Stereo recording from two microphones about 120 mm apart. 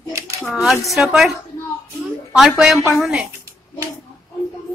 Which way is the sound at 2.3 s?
Centre (ahead or behind).